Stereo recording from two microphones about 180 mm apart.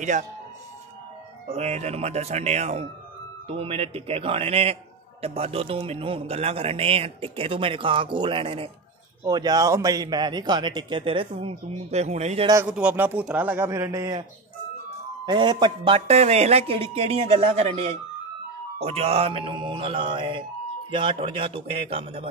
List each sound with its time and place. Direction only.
1.5 s a man's voice: 40° right (ahead or behind)
12.6 s a man's voice: 5° right (ahead or behind)
15.2 s a man's voice: 25° right (ahead or behind)